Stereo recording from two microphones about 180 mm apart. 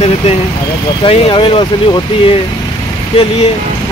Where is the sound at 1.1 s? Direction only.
30° left (ahead or behind).